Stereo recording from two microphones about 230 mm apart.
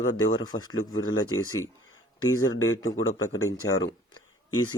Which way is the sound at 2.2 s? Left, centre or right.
Left.